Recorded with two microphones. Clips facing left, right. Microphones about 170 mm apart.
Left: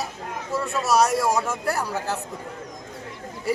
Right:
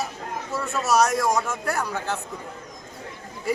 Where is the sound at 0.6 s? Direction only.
Centre (ahead or behind).